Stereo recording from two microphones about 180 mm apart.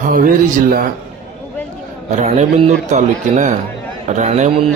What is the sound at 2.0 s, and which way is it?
A man's voice, 40° right (ahead or behind).